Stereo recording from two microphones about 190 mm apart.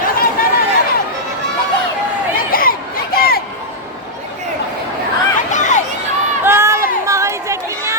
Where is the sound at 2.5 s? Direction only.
50° left (ahead or behind).